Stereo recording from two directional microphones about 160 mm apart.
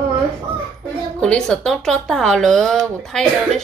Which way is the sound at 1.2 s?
5° left (ahead or behind).